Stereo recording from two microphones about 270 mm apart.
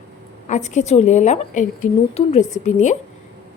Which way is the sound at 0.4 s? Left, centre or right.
Left.